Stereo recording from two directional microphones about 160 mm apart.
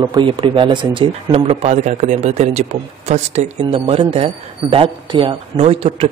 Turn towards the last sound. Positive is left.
turn(degrees=-40)  # may be behind; listen again after turning